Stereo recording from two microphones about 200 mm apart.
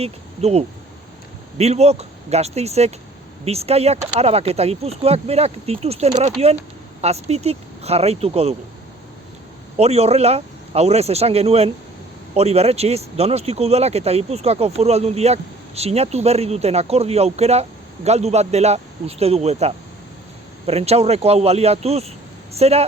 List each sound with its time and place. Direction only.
0.0 s speech: 30° right (ahead or behind)
9.7 s speech: 30° right (ahead or behind)